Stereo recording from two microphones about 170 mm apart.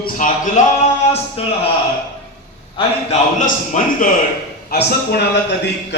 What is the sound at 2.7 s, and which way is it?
Speech, 40° left (ahead or behind).